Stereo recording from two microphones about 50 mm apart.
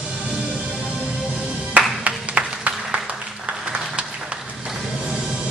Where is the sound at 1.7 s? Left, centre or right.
Right.